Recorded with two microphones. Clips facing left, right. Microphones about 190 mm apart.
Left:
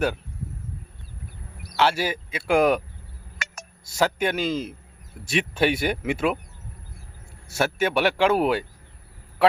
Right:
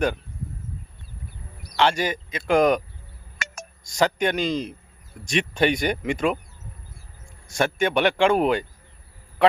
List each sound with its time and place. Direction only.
1.6 s speech: 5° left (ahead or behind)
3.3 s a sound: 50° right (ahead or behind)
3.8 s speech: 5° left (ahead or behind)
7.4 s speech: 5° left (ahead or behind)
9.4 s honk: 5° left (ahead or behind)